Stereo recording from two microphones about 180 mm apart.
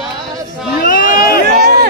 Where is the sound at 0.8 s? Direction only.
50° left (ahead or behind).